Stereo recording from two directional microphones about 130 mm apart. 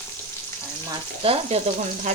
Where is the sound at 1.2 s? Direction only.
45° right (ahead or behind).